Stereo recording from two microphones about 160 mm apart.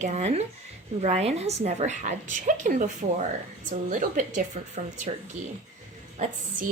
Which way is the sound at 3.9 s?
55° right (ahead or behind).